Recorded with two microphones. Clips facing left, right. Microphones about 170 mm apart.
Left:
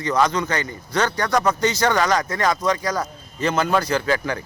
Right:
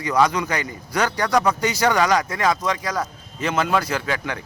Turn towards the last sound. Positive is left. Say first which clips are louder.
# left 4 dB
turn(degrees=0)  # may be behind; listen again after turning